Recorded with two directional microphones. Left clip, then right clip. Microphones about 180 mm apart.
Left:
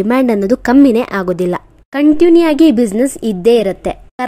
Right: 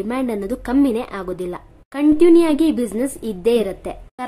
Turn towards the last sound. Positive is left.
turn(degrees=35)  # may be behind; listen again after turning